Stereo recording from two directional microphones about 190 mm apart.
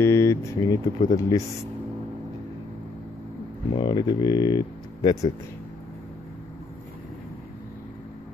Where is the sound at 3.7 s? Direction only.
25° left (ahead or behind).